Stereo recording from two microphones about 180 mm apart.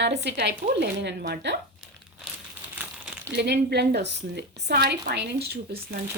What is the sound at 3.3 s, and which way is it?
A woman's voice, 65° right (ahead or behind).